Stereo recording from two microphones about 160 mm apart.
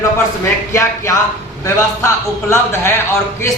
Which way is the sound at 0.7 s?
20° left (ahead or behind).